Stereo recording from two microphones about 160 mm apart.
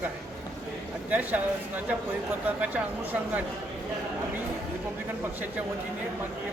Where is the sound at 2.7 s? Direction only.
10° right (ahead or behind).